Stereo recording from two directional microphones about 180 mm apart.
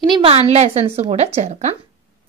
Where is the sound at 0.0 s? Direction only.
30° right (ahead or behind).